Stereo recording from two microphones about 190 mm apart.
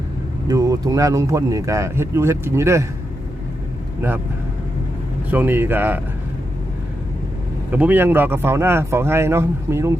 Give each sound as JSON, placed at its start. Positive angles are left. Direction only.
{"t": 0.4, "sound": "speech", "side_deg": -20}
{"t": 5.3, "sound": "speech", "side_deg": -10}
{"t": 7.7, "sound": "speech", "side_deg": -10}